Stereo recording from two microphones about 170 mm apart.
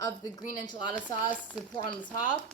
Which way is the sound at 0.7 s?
25° left (ahead or behind).